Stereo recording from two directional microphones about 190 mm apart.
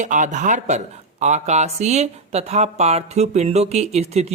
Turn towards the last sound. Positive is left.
turn(degrees=-35)  # may be behind; listen again after turning